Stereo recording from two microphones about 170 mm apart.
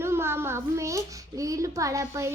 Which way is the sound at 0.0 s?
15° right (ahead or behind).